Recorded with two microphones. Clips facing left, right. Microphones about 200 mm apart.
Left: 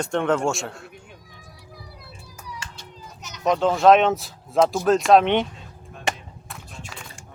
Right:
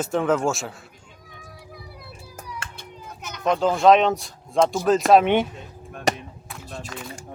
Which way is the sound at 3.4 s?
Centre (ahead or behind).